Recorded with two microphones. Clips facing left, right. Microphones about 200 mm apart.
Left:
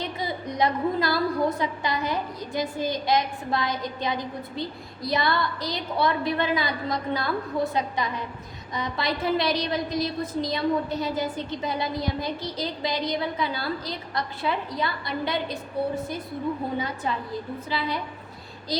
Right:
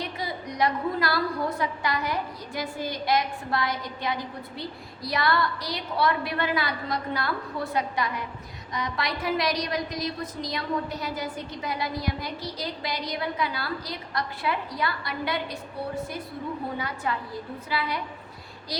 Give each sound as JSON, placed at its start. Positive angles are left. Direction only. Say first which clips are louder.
{"t": 0.0, "sound": "a woman's voice", "louder": "left 2 dB", "side_deg": 25}
{"t": 16.7, "sound": "a woman's voice", "louder": "left 2 dB", "side_deg": 20}